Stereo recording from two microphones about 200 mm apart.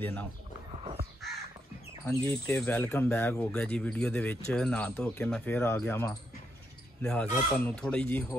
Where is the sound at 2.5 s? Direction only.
5° left (ahead or behind).